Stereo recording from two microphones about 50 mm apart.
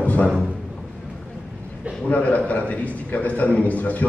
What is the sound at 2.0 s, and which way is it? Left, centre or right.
A man's voice, left.